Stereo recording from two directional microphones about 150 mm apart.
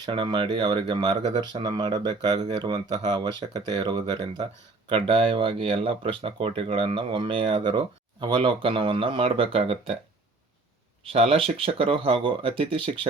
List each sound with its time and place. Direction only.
0.0 s speech: 30° right (ahead or behind)
11.0 s speech: 40° right (ahead or behind)